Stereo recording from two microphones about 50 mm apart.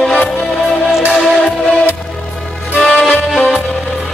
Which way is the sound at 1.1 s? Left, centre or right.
Centre.